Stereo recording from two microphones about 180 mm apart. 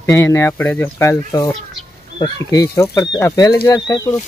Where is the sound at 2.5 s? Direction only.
20° left (ahead or behind).